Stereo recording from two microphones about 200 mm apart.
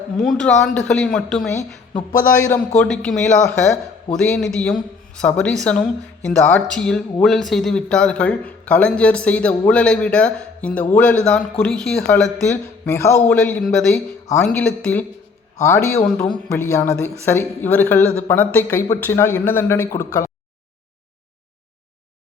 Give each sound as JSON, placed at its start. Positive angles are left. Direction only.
{"t": 0.2, "sound": "speech", "side_deg": 5}
{"t": 1.9, "sound": "speech", "side_deg": 15}
{"t": 2.7, "sound": "speech", "side_deg": 5}
{"t": 16.3, "sound": "speech", "side_deg": 15}